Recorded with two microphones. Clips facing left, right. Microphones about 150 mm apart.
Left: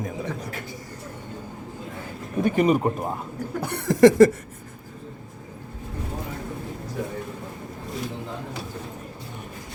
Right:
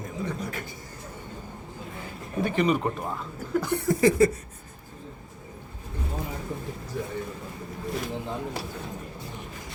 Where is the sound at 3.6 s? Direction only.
80° left.